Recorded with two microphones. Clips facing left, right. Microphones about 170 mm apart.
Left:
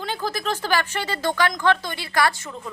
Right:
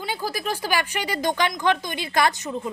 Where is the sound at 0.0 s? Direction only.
10° right (ahead or behind).